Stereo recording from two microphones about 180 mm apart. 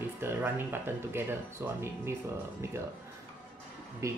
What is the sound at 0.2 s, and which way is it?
Speech, 10° right (ahead or behind).